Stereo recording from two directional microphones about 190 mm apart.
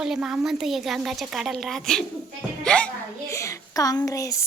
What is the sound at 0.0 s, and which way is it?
Speech, 5° right (ahead or behind).